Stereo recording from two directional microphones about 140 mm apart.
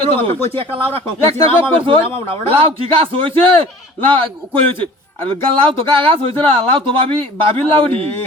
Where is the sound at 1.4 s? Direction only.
40° right (ahead or behind).